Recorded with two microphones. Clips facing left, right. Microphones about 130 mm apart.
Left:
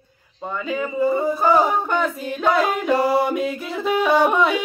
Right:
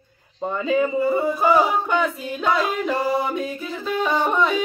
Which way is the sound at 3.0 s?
75° left (ahead or behind).